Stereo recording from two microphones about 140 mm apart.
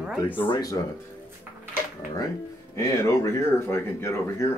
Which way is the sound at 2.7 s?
20° left (ahead or behind).